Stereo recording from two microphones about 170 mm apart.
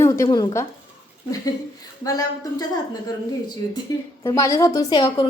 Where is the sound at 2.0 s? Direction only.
20° left (ahead or behind).